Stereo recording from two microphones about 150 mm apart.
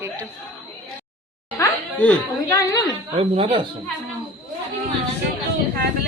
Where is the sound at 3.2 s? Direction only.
40° right (ahead or behind).